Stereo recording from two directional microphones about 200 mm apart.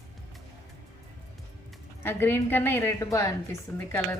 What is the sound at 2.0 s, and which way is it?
A woman's voice, 10° left (ahead or behind).